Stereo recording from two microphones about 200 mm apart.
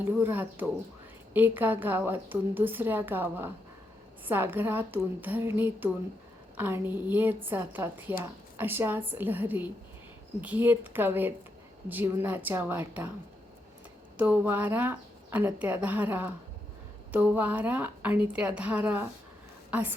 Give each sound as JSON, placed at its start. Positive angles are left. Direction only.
{"t": 0.0, "sound": "a woman's voice", "side_deg": -10}
{"t": 14.2, "sound": "a woman's voice", "side_deg": -5}